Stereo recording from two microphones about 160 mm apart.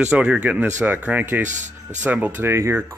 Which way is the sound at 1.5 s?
50° right (ahead or behind).